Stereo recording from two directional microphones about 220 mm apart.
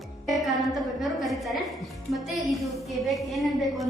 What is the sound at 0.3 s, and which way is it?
A woman's voice, centre (ahead or behind).